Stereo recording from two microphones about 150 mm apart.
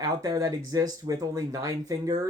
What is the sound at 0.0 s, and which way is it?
Speech, 25° right (ahead or behind).